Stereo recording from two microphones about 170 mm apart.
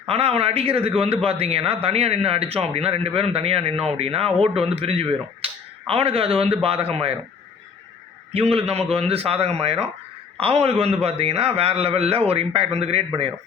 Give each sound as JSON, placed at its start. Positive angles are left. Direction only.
{"t": 0.1, "sound": "a man's voice", "side_deg": -35}
{"t": 8.3, "sound": "a man's voice", "side_deg": -35}